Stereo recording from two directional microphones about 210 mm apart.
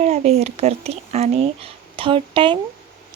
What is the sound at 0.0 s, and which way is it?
Speech, 30° right (ahead or behind).